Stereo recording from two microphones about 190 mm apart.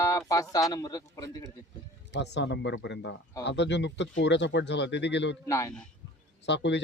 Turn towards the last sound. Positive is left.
turn(degrees=65)  # may be behind; listen again after turning